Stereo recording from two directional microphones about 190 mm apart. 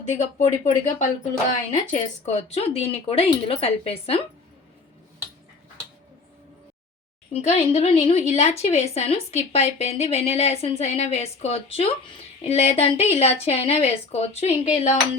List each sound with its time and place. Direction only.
0.2 s a woman's voice: 40° left (ahead or behind)
7.4 s a woman's voice: 35° left (ahead or behind)